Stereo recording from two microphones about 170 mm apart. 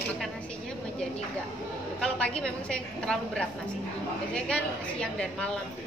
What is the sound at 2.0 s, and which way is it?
A woman's voice, 5° left (ahead or behind).